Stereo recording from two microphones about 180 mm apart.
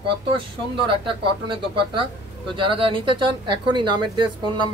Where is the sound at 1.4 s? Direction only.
30° right (ahead or behind).